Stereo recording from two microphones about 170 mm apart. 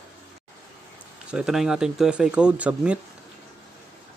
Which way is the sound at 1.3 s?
5° right (ahead or behind).